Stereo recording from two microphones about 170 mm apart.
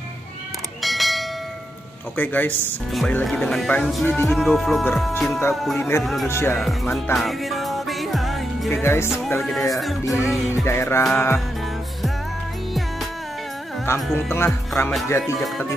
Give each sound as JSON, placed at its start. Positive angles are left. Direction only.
{"t": 0.8, "sound": "bell", "side_deg": 0}
{"t": 2.1, "sound": "speech", "side_deg": 10}
{"t": 4.4, "sound": "speech", "side_deg": 0}
{"t": 5.8, "sound": "speech", "side_deg": 15}
{"t": 7.2, "sound": "music", "side_deg": 0}
{"t": 8.8, "sound": "speech", "side_deg": 15}
{"t": 9.5, "sound": "speech", "side_deg": 0}
{"t": 10.5, "sound": "speech", "side_deg": 15}
{"t": 13.8, "sound": "speech", "side_deg": 15}